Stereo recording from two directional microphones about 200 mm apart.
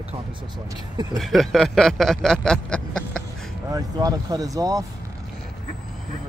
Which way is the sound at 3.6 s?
20° right (ahead or behind).